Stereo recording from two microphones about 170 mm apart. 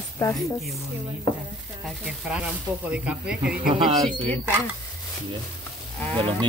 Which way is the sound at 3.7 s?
30° right (ahead or behind).